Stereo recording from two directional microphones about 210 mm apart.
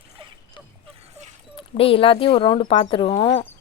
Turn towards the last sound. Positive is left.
turn(degrees=20)  # may be behind; listen again after turning